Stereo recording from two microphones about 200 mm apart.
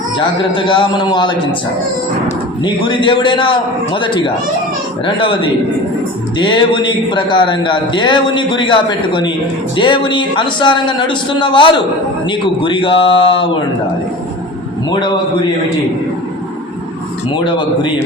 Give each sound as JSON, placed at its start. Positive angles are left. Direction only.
{"t": 0.2, "sound": "a man's voice", "side_deg": 25}
{"t": 2.6, "sound": "a man's voice", "side_deg": 25}
{"t": 14.8, "sound": "a man's voice", "side_deg": 20}
{"t": 17.3, "sound": "a man's voice", "side_deg": 25}